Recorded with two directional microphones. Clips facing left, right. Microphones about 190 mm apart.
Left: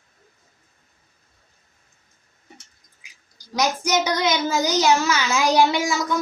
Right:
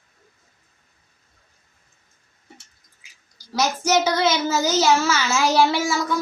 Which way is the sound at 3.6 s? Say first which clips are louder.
Right 1 dB; 15° left (ahead or behind).